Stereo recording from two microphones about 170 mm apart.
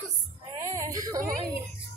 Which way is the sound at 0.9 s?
20° right (ahead or behind).